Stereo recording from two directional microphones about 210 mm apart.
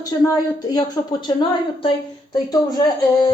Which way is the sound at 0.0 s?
15° left (ahead or behind).